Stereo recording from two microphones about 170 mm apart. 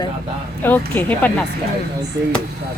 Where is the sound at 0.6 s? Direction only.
10° left (ahead or behind).